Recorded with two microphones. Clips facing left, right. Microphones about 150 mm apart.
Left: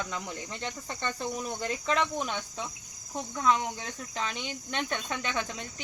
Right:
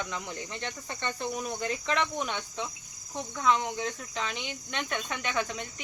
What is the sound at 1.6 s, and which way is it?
Speech, 35° left (ahead or behind).